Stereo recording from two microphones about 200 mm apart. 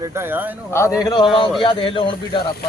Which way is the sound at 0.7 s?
15° left (ahead or behind).